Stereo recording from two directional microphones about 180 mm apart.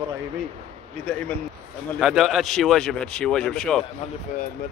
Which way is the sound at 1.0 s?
5° left (ahead or behind).